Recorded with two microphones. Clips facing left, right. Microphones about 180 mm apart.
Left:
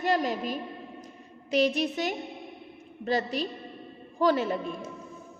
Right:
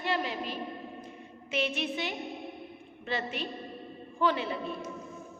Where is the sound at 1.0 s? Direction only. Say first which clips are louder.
Even; 40° left (ahead or behind).